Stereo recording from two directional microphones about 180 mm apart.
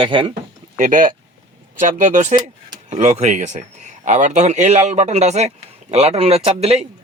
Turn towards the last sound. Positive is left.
turn(degrees=-35)  # may be behind; listen again after turning